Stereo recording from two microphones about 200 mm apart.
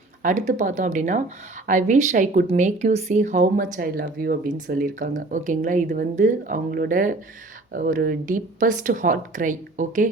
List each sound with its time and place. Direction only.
0.2 s speech: 40° right (ahead or behind)